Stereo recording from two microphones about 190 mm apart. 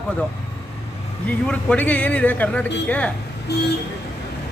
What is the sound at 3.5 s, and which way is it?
Speech, 60° left (ahead or behind).